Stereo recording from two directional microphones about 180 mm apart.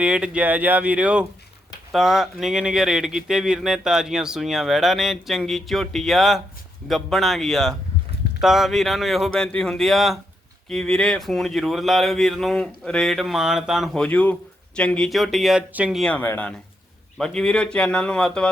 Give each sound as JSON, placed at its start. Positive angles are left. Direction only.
{"t": 0.0, "sound": "speech", "side_deg": -5}